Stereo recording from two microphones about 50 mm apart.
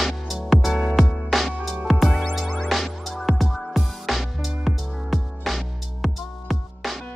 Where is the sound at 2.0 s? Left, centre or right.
Centre.